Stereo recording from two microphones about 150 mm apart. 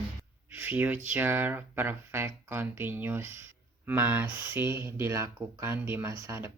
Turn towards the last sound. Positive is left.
turn(degrees=-20)  # may be behind; listen again after turning